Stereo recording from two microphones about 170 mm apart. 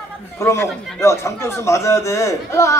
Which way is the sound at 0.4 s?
15° left (ahead or behind).